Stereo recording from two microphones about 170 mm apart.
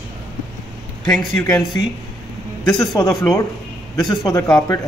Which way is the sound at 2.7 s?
20° left (ahead or behind).